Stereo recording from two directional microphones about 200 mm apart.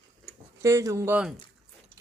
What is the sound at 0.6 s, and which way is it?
Speech, 15° right (ahead or behind).